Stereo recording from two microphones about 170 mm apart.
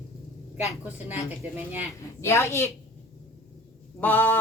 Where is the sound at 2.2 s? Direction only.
15° left (ahead or behind).